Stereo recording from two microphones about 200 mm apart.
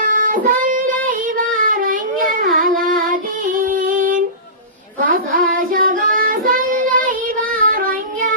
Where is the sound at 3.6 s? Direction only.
40° right (ahead or behind).